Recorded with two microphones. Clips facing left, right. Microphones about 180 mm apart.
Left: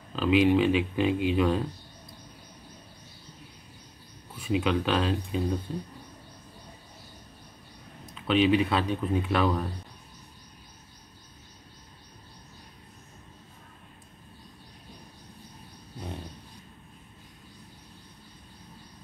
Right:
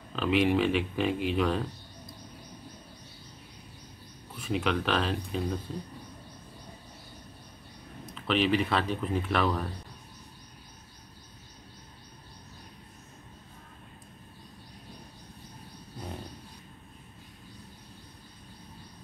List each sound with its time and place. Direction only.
0.1 s speech: centre (ahead or behind)
4.5 s speech: 5° left (ahead or behind)
8.3 s speech: centre (ahead or behind)